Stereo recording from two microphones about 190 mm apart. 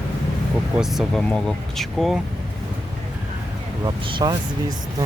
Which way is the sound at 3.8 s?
20° right (ahead or behind).